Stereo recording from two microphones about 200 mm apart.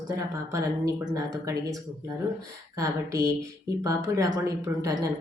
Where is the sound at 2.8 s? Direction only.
15° right (ahead or behind).